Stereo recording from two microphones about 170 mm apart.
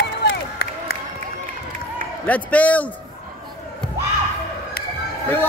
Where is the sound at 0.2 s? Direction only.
70° left (ahead or behind).